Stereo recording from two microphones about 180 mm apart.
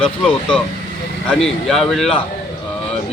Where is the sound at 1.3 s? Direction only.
5° left (ahead or behind).